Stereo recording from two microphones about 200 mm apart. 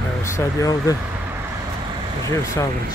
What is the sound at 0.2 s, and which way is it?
Speech, 15° left (ahead or behind).